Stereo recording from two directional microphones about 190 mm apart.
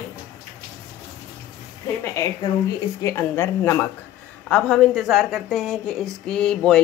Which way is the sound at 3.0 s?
15° left (ahead or behind).